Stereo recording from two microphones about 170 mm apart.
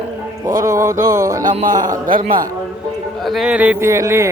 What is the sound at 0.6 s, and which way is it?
Speech, 15° right (ahead or behind).